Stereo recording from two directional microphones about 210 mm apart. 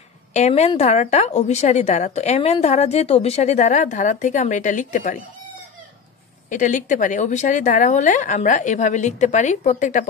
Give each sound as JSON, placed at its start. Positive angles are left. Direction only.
{"t": 0.3, "sound": "a woman's voice", "side_deg": 30}
{"t": 6.5, "sound": "a woman's voice", "side_deg": 35}